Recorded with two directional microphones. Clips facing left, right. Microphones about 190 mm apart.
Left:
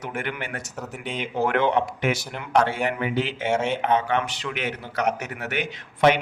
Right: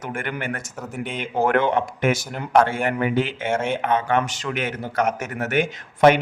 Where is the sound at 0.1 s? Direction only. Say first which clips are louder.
Right 4 dB; 50° right (ahead or behind).